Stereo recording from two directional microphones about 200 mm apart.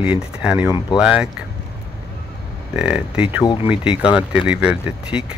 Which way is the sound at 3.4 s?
25° left (ahead or behind).